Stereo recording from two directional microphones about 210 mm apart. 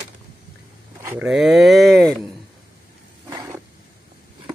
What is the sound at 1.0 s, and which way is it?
Speech, 5° right (ahead or behind).